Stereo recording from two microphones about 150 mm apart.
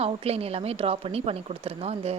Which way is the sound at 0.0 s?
40° right (ahead or behind).